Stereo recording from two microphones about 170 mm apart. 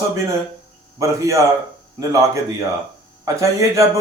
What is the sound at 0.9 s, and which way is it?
Speech, 15° right (ahead or behind).